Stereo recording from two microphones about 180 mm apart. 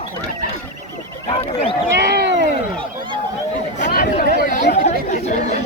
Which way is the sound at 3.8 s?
55° left (ahead or behind).